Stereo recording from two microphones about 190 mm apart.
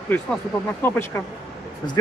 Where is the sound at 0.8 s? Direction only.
15° left (ahead or behind).